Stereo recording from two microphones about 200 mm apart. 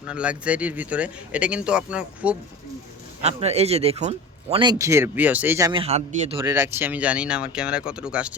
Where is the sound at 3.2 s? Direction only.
30° right (ahead or behind); by 5.7 s 10° right (ahead or behind).